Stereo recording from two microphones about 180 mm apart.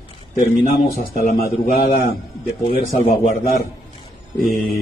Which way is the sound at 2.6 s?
35° left (ahead or behind).